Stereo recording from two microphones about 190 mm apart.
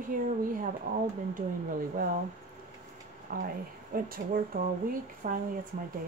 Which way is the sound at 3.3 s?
50° right (ahead or behind).